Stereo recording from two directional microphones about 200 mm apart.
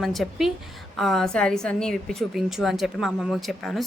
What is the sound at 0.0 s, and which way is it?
Speech, centre (ahead or behind).